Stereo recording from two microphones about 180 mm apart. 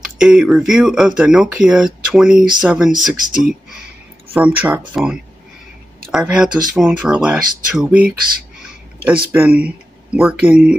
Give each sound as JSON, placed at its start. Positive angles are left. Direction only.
{"t": 0.0, "sound": "speech", "side_deg": -5}
{"t": 3.3, "sound": "speech", "side_deg": -50}
{"t": 4.3, "sound": "speech", "side_deg": -10}